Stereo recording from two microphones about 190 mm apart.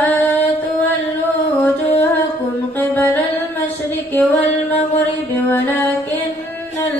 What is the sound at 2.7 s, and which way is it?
Music, 10° left (ahead or behind).